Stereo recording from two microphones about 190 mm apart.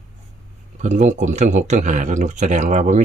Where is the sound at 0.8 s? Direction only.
40° right (ahead or behind).